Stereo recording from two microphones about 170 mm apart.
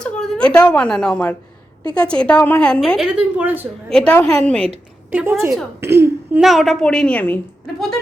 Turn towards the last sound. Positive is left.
turn(degrees=5)  # may be behind; listen again after turning